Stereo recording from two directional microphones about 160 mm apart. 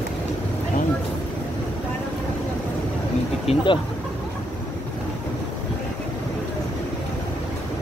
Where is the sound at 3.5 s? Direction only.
40° left (ahead or behind).